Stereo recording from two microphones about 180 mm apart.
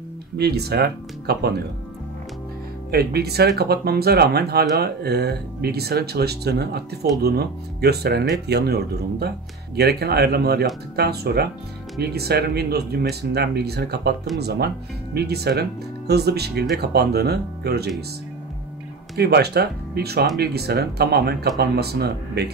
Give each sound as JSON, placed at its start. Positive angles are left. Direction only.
{"t": 0.4, "sound": "speech", "side_deg": -65}
{"t": 2.9, "sound": "speech", "side_deg": -60}
{"t": 19.1, "sound": "speech", "side_deg": -65}